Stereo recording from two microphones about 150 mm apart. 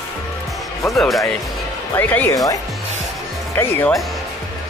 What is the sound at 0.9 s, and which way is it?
Speech, centre (ahead or behind).